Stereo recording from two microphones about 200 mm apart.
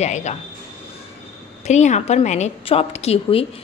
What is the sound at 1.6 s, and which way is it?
A woman's voice, 35° left (ahead or behind).